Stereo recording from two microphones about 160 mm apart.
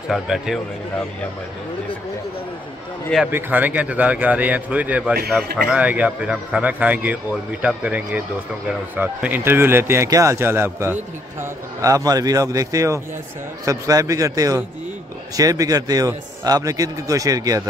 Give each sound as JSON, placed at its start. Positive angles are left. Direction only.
{"t": 0.1, "sound": "speech", "side_deg": 0}
{"t": 3.3, "sound": "a man's voice", "side_deg": -10}